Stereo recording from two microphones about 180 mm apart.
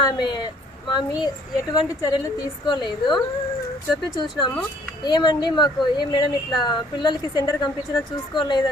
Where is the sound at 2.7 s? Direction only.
25° left (ahead or behind).